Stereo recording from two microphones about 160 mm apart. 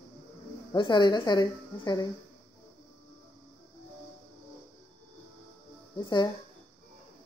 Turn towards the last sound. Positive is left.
turn(degrees=25)  # may be behind; listen again after turning